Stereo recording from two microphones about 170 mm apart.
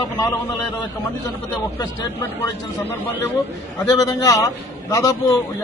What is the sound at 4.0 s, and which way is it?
A man's voice, 20° left (ahead or behind).